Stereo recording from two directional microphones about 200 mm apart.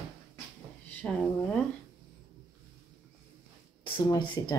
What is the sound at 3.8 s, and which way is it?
Speech, 20° left (ahead or behind).